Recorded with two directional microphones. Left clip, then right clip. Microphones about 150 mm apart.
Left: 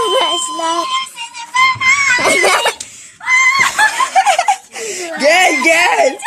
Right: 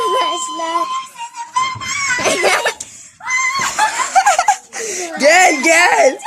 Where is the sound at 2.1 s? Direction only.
30° left (ahead or behind).